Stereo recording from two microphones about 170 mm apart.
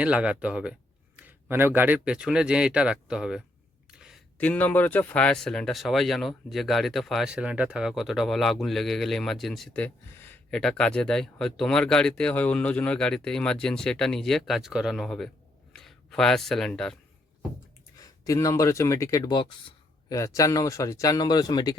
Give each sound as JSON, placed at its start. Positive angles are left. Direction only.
{"t": 0.0, "sound": "speech", "side_deg": -5}
{"t": 3.9, "sound": "a sound", "side_deg": -5}
{"t": 4.4, "sound": "speech", "side_deg": 10}
{"t": 17.9, "sound": "speech", "side_deg": 20}